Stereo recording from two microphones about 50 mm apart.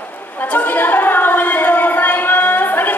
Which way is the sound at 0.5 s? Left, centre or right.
Left.